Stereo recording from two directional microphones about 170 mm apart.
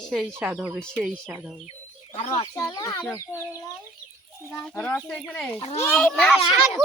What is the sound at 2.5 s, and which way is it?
A child's voice, 20° left (ahead or behind).